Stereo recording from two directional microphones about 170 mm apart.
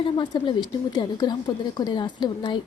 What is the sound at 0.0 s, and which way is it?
A woman's voice, 30° left (ahead or behind).